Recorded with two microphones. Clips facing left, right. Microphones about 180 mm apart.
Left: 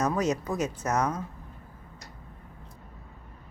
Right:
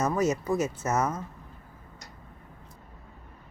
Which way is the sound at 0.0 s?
5° right (ahead or behind).